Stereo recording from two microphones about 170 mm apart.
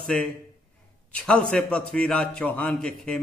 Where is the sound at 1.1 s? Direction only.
5° left (ahead or behind).